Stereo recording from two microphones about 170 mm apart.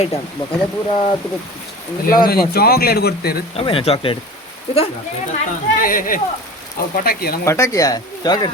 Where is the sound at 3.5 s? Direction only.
35° left (ahead or behind).